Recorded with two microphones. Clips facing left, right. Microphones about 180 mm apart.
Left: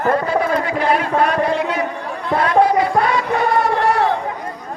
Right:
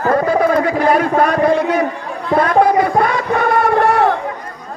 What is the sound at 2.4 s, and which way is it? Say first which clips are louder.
Music: right 1 dB; 50° right (ahead or behind).